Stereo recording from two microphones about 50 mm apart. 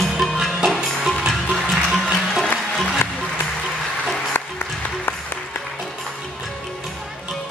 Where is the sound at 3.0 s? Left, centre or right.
Left.